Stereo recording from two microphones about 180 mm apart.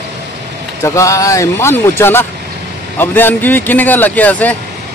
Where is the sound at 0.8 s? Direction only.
15° left (ahead or behind).